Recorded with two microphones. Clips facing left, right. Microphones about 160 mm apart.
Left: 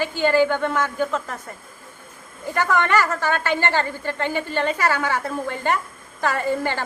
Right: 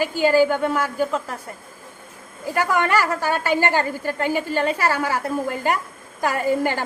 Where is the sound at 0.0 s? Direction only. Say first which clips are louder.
Right 2 dB; 10° right (ahead or behind).